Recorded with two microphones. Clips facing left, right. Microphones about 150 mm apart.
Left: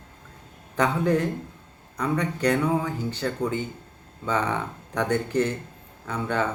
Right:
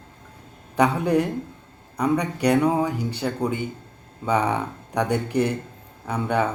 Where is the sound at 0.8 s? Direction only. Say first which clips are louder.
Right 3 dB; 15° right (ahead or behind).